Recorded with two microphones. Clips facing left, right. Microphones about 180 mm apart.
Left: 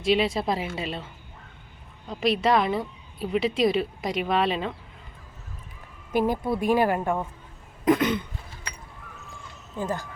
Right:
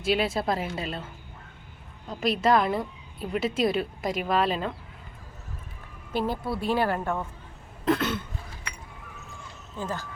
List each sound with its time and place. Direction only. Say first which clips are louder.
0.0 s a woman's voice: left 2 dB; centre (ahead or behind)
2.0 s a woman's voice: left 1 dB; centre (ahead or behind)
6.1 s speech: left 4 dB; 15° left (ahead or behind)
9.7 s speech: left 4 dB; 15° left (ahead or behind)